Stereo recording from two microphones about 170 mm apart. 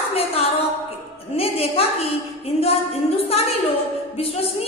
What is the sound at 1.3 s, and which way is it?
Speech, 35° left (ahead or behind).